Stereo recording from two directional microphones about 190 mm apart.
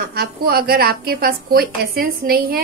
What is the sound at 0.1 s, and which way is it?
A woman's voice, 55° right (ahead or behind).